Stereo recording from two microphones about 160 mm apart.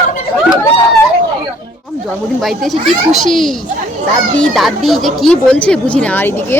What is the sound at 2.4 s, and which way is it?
A woman's voice, centre (ahead or behind).